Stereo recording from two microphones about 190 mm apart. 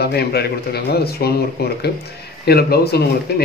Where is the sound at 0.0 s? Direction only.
55° left (ahead or behind).